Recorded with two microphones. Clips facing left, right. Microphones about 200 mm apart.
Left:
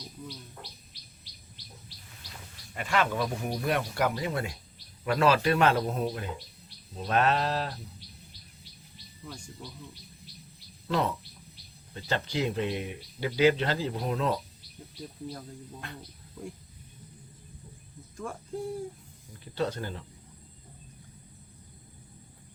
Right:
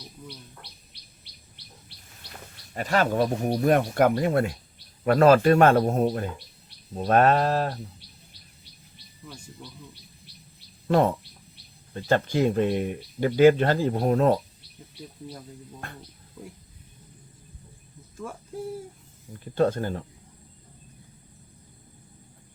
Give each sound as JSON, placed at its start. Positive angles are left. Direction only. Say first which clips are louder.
{"t": 1.6, "sound": "bird", "louder": "left 1 dB", "side_deg": -65}
{"t": 2.2, "sound": "livestock", "louder": "right 4 dB", "side_deg": -65}
{"t": 2.7, "sound": "speech", "louder": "right 5 dB", "side_deg": -40}
{"t": 9.2, "sound": "speech", "louder": "even", "side_deg": -5}
{"t": 10.8, "sound": "speech", "louder": "right 8 dB", "side_deg": -50}
{"t": 15.8, "sound": "speech", "louder": "right 3 dB", "side_deg": -50}
{"t": 16.4, "sound": "speech", "louder": "left 2 dB", "side_deg": 0}
{"t": 18.2, "sound": "speech", "louder": "even", "side_deg": -5}
{"t": 19.5, "sound": "speech", "louder": "right 8 dB", "side_deg": -50}